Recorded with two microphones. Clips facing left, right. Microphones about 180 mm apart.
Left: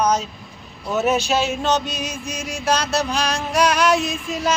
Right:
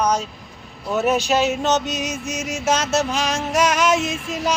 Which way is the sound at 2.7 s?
20° right (ahead or behind).